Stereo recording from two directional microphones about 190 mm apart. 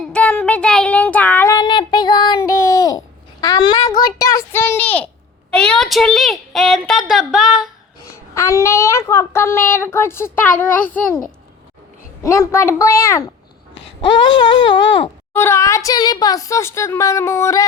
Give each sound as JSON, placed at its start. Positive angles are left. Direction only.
{"t": 0.1, "sound": "child singing", "side_deg": 5}
{"t": 3.4, "sound": "a sound", "side_deg": 20}
{"t": 5.5, "sound": "a woman's voice", "side_deg": 5}
{"t": 8.0, "sound": "a woman's voice", "side_deg": 15}
{"t": 12.2, "sound": "a woman's voice", "side_deg": 15}
{"t": 14.0, "sound": "a sound", "side_deg": 25}
{"t": 14.8, "sound": "wail", "side_deg": 75}
{"t": 15.3, "sound": "a woman's voice", "side_deg": 10}